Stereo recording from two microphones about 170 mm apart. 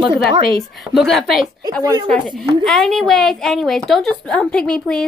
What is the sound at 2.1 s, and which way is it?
A woman's voice, centre (ahead or behind).